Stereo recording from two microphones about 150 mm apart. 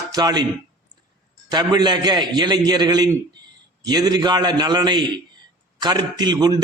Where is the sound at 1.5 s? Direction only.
30° right (ahead or behind).